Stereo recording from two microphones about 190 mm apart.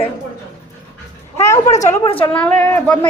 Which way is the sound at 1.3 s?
15° left (ahead or behind).